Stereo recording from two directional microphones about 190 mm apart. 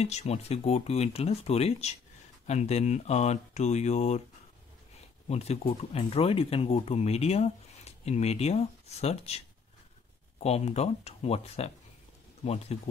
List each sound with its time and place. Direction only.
0.0 s speech: 35° left (ahead or behind)
5.3 s speech: 30° left (ahead or behind)
10.4 s speech: 35° left (ahead or behind)